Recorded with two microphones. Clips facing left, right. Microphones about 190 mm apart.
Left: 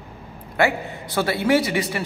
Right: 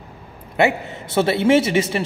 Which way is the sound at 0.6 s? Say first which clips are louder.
Right 3 dB; 20° right (ahead or behind).